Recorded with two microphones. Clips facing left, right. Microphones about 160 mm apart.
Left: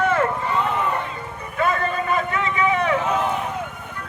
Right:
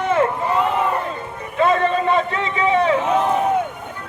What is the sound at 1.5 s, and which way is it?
Vehicle, 25° right (ahead or behind).